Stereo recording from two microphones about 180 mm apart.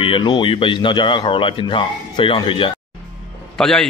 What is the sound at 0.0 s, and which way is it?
Speech, 25° left (ahead or behind).